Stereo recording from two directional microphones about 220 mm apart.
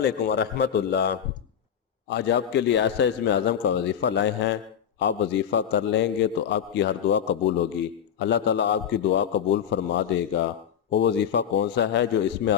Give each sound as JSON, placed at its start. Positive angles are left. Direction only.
{"t": 0.0, "sound": "a man's voice", "side_deg": 50}